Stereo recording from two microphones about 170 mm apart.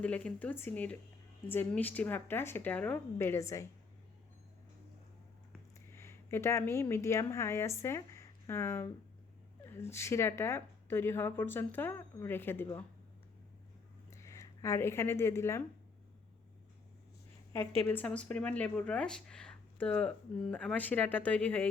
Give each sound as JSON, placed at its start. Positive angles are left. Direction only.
{"t": 0.0, "sound": "speech", "side_deg": 10}
{"t": 5.9, "sound": "speech", "side_deg": 15}
{"t": 14.1, "sound": "speech", "side_deg": 15}
{"t": 17.8, "sound": "speech", "side_deg": 10}